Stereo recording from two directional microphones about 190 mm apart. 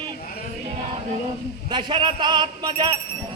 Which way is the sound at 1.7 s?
25° right (ahead or behind).